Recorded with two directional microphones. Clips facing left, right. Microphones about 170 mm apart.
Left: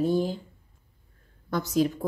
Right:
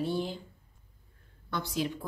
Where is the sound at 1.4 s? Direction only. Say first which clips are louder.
Left 8 dB; 45° left (ahead or behind).